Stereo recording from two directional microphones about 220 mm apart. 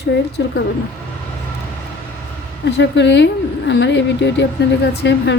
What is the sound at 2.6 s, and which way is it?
A woman's voice, 55° left (ahead or behind).